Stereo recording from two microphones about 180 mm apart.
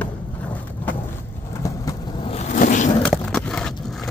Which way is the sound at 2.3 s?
45° left (ahead or behind).